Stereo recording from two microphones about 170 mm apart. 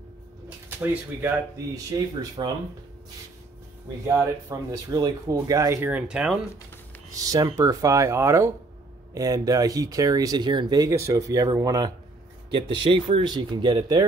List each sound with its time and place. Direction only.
0.7 s speech: 10° right (ahead or behind)
1.9 s speech: 25° right (ahead or behind)
4.1 s speech: 15° right (ahead or behind)
7.2 s speech: 20° right (ahead or behind)